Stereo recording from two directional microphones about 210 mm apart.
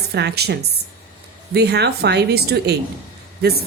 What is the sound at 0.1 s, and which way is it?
A woman's voice, 50° right (ahead or behind).